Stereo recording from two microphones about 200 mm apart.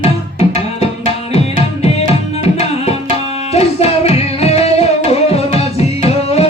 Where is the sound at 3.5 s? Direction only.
30° left (ahead or behind).